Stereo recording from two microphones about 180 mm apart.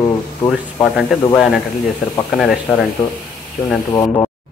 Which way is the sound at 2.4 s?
Centre (ahead or behind).